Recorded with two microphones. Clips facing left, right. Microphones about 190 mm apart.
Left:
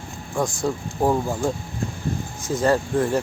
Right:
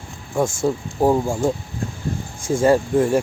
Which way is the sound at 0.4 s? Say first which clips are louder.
Right 4 dB; 25° right (ahead or behind).